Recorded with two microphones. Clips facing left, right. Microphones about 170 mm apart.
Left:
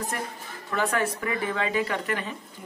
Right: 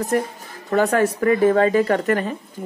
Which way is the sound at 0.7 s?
40° right (ahead or behind).